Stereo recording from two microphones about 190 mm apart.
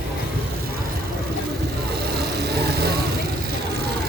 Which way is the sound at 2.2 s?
55° right (ahead or behind).